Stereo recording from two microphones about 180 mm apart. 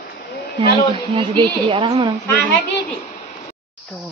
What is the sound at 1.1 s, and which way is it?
Speech, 25° right (ahead or behind).